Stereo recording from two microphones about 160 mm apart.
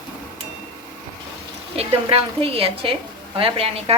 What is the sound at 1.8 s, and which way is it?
A woman's voice, 35° right (ahead or behind).